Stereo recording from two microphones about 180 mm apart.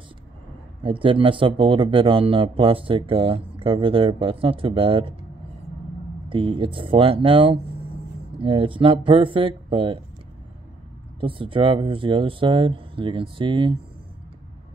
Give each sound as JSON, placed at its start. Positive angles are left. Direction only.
{"t": 0.8, "sound": "speech", "side_deg": -30}
{"t": 6.2, "sound": "speech", "side_deg": -30}
{"t": 11.1, "sound": "speech", "side_deg": -30}